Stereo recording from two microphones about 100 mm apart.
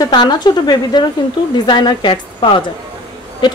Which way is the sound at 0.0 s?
45° left (ahead or behind).